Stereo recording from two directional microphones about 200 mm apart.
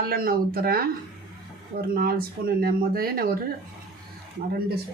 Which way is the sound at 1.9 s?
50° right (ahead or behind).